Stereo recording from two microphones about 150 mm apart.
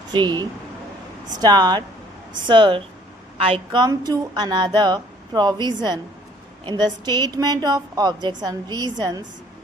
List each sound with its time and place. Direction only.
0.1 s a woman's voice: 30° right (ahead or behind)